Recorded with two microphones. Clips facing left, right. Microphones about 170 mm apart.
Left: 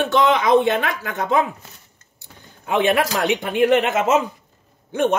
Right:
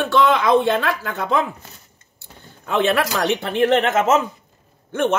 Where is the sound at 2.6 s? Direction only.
15° left (ahead or behind).